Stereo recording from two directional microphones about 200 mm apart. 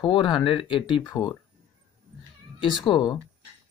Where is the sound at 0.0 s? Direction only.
20° left (ahead or behind).